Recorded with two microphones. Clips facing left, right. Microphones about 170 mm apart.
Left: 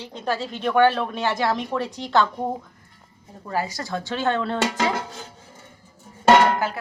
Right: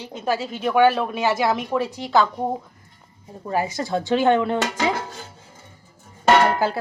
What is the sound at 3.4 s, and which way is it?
Speech, 20° right (ahead or behind).